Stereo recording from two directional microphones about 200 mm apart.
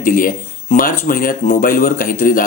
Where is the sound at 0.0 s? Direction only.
45° left (ahead or behind).